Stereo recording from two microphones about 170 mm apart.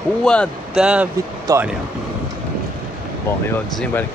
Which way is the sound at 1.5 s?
20° right (ahead or behind).